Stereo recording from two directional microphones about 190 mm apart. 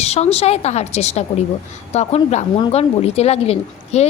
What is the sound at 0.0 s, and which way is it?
Speech, 35° left (ahead or behind).